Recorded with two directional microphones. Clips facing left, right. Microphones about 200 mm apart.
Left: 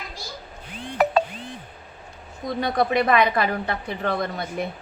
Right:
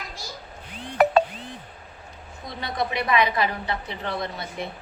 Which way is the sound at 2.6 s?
50° left (ahead or behind).